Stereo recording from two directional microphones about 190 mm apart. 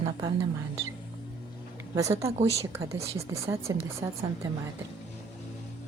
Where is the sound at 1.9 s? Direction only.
15° right (ahead or behind).